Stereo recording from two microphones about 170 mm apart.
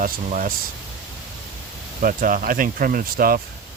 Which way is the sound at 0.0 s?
55° right (ahead or behind).